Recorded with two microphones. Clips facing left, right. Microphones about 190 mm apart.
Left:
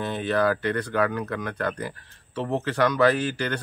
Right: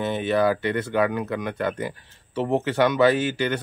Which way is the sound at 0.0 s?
20° right (ahead or behind).